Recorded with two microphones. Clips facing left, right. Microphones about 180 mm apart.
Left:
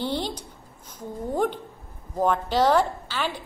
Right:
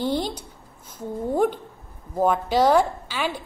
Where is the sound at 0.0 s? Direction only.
10° right (ahead or behind).